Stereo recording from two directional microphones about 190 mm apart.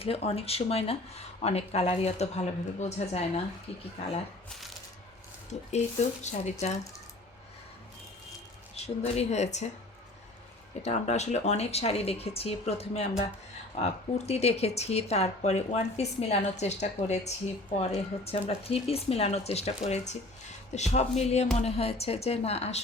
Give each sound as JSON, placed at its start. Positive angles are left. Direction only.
{"t": 0.0, "sound": "speech", "side_deg": 30}
{"t": 5.5, "sound": "speech", "side_deg": 35}
{"t": 8.7, "sound": "speech", "side_deg": 35}
{"t": 10.8, "sound": "speech", "side_deg": 35}